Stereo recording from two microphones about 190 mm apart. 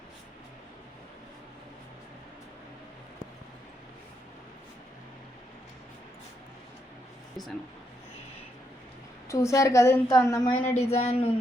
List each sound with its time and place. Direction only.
9.3 s a woman's voice: 15° left (ahead or behind)
10.8 s speech: 35° left (ahead or behind)